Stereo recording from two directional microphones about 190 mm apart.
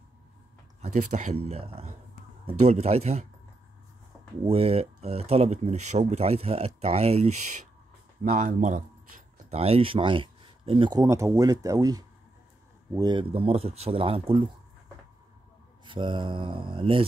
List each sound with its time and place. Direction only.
0.8 s speech: 40° right (ahead or behind)
4.5 s speech: 30° right (ahead or behind)
9.5 s speech: 30° right (ahead or behind)
15.8 s speech: 25° right (ahead or behind)